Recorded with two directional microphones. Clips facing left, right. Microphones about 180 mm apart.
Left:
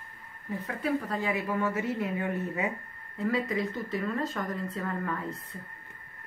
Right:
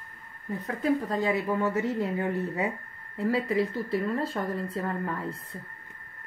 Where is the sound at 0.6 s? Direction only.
40° right (ahead or behind).